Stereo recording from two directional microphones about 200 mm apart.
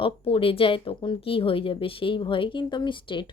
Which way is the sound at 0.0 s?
25° left (ahead or behind).